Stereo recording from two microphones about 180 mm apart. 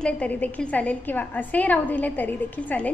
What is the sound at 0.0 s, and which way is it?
A woman's voice, 10° left (ahead or behind).